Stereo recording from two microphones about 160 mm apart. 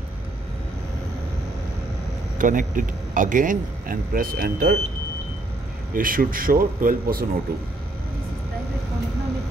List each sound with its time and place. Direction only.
2.3 s a man's voice: 55° right (ahead or behind)
5.9 s a man's voice: 60° right (ahead or behind)